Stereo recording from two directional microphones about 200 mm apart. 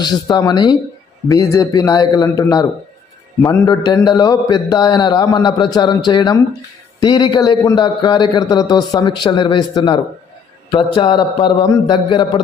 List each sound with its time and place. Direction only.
0.0 s a man's voice: 20° left (ahead or behind)